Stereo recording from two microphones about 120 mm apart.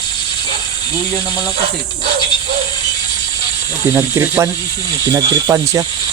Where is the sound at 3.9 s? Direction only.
20° right (ahead or behind).